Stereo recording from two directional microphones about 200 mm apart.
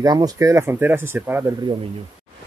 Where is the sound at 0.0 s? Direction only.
20° right (ahead or behind).